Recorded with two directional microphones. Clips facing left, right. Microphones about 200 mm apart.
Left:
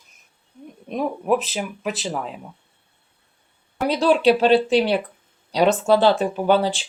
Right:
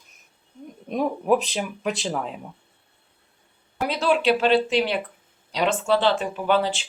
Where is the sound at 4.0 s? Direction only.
35° left (ahead or behind).